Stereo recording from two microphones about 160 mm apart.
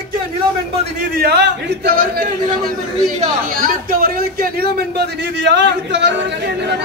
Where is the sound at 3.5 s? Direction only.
60° right (ahead or behind); by 6.1 s 90° right.